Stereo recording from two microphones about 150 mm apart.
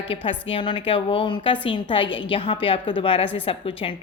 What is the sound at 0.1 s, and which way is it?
A woman's voice, 35° left (ahead or behind).